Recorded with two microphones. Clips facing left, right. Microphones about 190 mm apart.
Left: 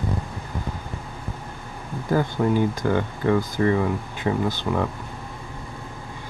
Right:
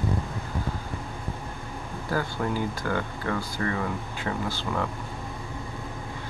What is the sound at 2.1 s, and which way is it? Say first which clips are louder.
Speech: left 7 dB; 20° left (ahead or behind).